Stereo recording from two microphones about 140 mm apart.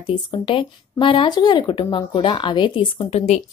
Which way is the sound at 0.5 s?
40° left (ahead or behind).